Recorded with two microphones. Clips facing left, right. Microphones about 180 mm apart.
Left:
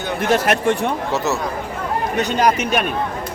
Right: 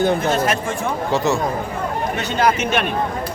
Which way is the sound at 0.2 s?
80° left.